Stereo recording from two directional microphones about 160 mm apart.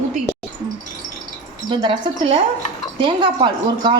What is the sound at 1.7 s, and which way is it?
Speech, 30° right (ahead or behind).